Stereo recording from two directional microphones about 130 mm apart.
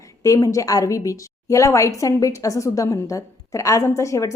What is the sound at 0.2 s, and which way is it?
A woman's voice, 25° left (ahead or behind).